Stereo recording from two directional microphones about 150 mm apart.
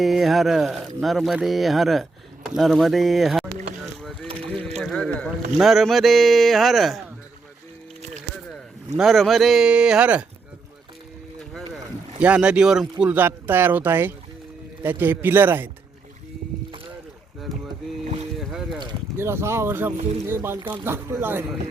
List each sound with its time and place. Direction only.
0.0 s speech: centre (ahead or behind)
4.3 s ratchet: 40° right (ahead or behind)
4.8 s boat: 5° left (ahead or behind)
5.5 s speech: centre (ahead or behind)
9.0 s speech: centre (ahead or behind)
12.2 s speech: 5° right (ahead or behind)
18.3 s boat: 5° right (ahead or behind)
19.1 s speech: 15° right (ahead or behind)
20.6 s speech: 30° right (ahead or behind)
20.8 s speech: 15° right (ahead or behind)